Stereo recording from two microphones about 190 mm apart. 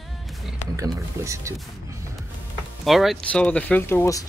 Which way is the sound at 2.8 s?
Centre (ahead or behind).